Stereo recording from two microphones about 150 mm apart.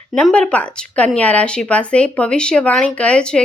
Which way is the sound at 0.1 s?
5° left (ahead or behind).